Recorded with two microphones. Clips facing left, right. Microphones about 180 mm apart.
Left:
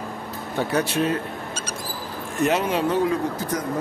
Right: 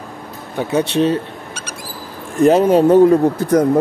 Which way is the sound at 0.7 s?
30° right (ahead or behind).